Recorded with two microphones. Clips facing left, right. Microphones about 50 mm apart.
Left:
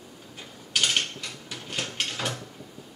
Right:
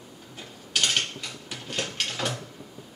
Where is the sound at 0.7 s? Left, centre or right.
Centre.